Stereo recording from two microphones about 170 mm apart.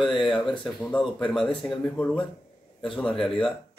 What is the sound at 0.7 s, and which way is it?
A woman's voice, 5° left (ahead or behind).